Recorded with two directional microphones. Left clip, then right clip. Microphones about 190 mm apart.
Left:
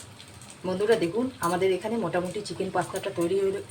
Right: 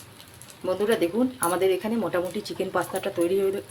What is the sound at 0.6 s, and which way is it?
Speech, 35° right (ahead or behind).